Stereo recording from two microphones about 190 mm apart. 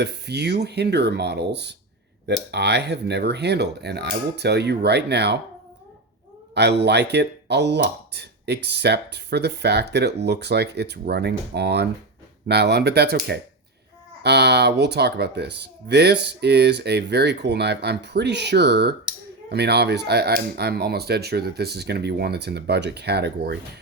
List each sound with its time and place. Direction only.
0.0 s speech: 60° right (ahead or behind)
6.5 s speech: 65° right (ahead or behind)